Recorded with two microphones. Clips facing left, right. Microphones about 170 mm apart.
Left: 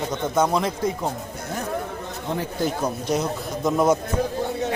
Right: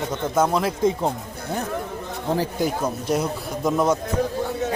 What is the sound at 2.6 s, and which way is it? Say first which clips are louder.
A man's voice: right 1 dB; 5° right (ahead or behind).